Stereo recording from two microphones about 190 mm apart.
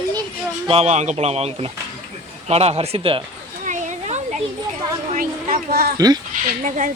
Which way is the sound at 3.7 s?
40° right (ahead or behind).